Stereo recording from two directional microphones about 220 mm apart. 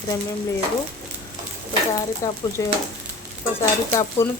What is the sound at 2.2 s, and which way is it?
Speech, 15° left (ahead or behind).